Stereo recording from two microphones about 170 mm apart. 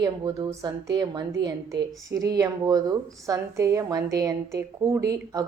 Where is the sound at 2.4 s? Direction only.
20° right (ahead or behind).